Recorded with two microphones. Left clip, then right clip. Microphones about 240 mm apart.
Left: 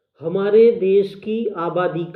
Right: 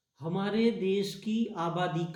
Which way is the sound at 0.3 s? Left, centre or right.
Right.